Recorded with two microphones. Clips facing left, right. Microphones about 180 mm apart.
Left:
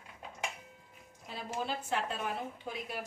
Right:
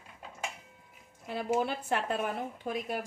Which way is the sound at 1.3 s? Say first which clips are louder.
Right 7 dB; 60° right (ahead or behind).